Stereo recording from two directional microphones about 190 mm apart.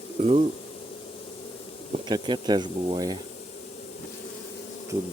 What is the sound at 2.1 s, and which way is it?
Speech, 25° right (ahead or behind).